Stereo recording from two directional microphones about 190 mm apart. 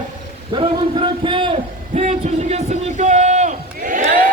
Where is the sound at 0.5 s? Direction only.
25° right (ahead or behind).